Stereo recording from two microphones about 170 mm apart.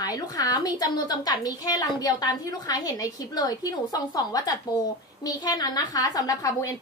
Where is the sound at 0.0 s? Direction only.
20° left (ahead or behind).